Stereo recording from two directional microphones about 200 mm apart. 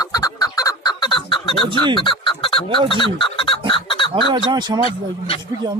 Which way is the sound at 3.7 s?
25° left (ahead or behind).